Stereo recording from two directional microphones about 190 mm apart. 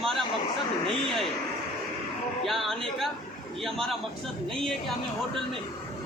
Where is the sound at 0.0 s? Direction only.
Centre (ahead or behind).